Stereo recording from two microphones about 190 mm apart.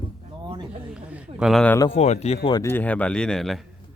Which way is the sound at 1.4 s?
Centre (ahead or behind).